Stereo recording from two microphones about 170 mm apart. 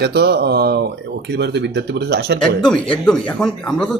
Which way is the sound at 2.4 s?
5° left (ahead or behind).